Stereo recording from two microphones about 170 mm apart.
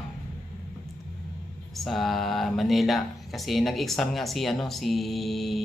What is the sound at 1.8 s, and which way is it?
Speech, centre (ahead or behind).